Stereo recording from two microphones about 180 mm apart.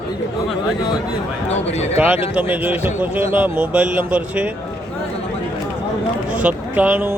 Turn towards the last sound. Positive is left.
turn(degrees=-10)  # may be behind; listen again after turning